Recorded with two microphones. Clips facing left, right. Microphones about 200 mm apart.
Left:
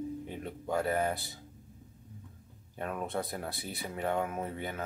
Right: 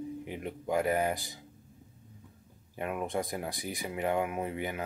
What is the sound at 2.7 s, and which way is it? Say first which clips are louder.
Speech: right 2 dB; 10° right (ahead or behind).